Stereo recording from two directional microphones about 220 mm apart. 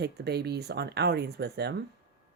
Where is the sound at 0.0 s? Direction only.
50° right (ahead or behind).